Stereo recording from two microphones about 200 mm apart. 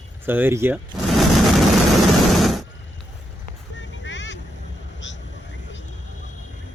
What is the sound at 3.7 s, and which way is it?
Music, 65° left (ahead or behind).